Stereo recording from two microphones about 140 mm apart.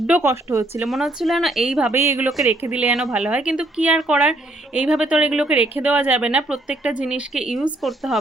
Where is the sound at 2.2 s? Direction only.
Centre (ahead or behind).